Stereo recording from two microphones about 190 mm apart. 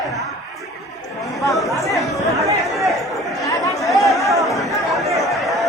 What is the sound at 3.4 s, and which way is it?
Chatter, 15° left (ahead or behind).